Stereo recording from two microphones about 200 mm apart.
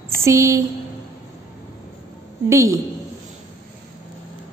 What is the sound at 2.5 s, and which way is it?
Speech, 15° right (ahead or behind).